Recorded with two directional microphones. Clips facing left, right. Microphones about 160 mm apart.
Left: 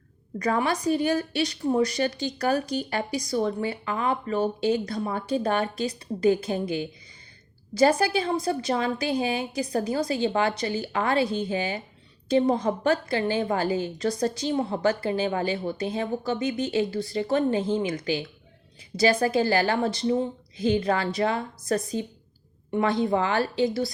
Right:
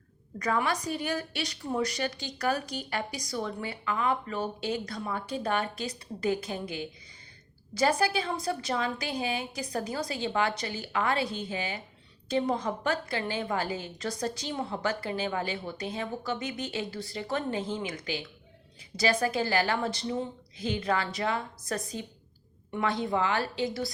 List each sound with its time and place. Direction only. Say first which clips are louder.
0.3 s a woman's voice: left 4 dB; 35° left (ahead or behind)
7.8 s a woman's voice: left 5 dB; 30° left (ahead or behind)